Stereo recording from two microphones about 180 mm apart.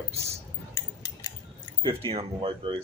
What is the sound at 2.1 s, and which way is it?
Speech, 30° right (ahead or behind).